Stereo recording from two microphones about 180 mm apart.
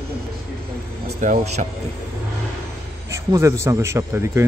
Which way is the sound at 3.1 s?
15° right (ahead or behind).